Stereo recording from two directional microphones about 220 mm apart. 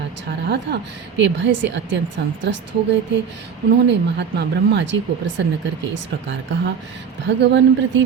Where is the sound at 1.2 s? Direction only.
55° right (ahead or behind).